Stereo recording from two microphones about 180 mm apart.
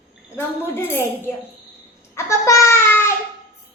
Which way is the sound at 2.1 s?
15° left (ahead or behind).